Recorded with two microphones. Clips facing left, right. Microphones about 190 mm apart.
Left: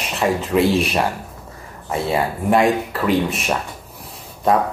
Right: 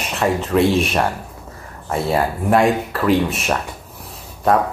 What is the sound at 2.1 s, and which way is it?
Speech, centre (ahead or behind).